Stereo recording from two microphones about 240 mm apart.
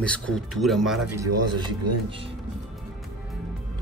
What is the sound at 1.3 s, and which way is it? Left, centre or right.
Speech, right.